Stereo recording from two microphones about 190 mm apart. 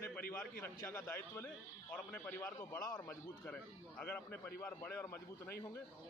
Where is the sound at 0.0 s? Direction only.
10° left (ahead or behind).